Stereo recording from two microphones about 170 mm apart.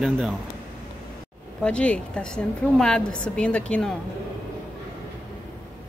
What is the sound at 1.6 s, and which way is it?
A woman's voice, 5° left (ahead or behind).